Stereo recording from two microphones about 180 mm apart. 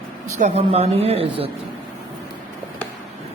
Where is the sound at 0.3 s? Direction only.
40° right (ahead or behind).